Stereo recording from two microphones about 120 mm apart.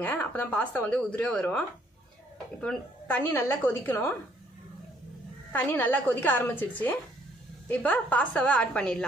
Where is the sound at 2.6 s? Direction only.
15° left (ahead or behind).